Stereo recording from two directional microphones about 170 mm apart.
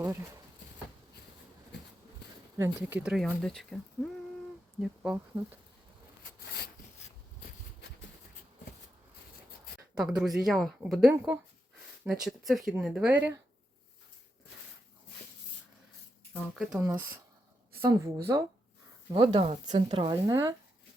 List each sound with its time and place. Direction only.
0.0 s speech: 15° right (ahead or behind)
2.6 s speech: 15° right (ahead or behind); by 3.8 s 5° left (ahead or behind)
4.8 s speech: 5° right (ahead or behind)
9.9 s speech: 5° right (ahead or behind)
16.3 s speech: centre (ahead or behind)
16.7 s speech: 15° right (ahead or behind)
19.1 s speech: 30° right (ahead or behind)
19.6 s speech: 45° right (ahead or behind)
20.0 s speech: 25° right (ahead or behind)